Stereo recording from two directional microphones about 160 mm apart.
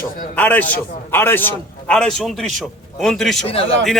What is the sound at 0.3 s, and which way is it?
A man's voice, 10° left (ahead or behind).